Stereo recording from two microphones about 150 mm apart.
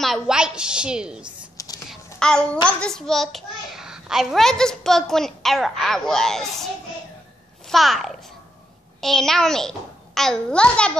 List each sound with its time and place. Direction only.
0.0 s a child's voice: centre (ahead or behind)
1.6 s fowl: 20° left (ahead or behind)
2.1 s a child's voice: 5° left (ahead or behind)